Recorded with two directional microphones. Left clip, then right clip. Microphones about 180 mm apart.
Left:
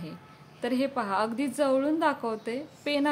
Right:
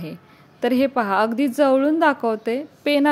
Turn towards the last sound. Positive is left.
turn(degrees=-35)  # may be behind; listen again after turning